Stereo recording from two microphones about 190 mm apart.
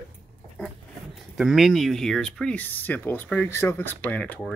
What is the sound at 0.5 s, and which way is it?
Speech, centre (ahead or behind).